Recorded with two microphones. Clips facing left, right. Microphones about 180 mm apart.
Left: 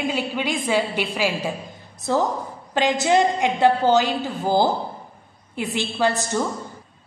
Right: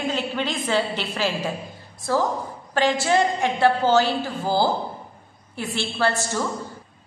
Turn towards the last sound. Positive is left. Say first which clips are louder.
# left 2 dB
turn(degrees=15)  # may be behind; listen again after turning